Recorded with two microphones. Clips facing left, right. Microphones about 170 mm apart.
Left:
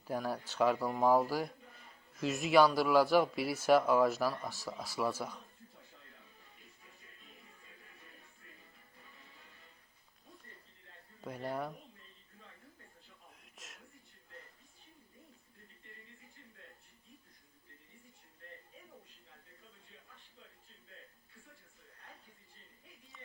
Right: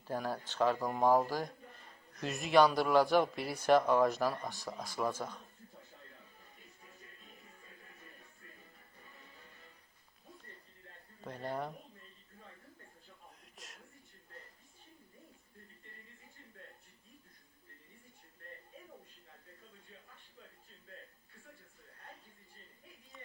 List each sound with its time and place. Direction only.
0.1 s speech: 10° left (ahead or behind)
11.3 s speech: 10° left (ahead or behind)
13.4 s a sound: centre (ahead or behind)